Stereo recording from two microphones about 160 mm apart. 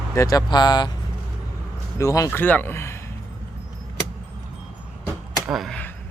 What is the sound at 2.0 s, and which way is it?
Speech, 20° left (ahead or behind).